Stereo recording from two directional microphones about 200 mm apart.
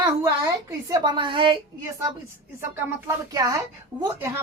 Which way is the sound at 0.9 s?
20° right (ahead or behind).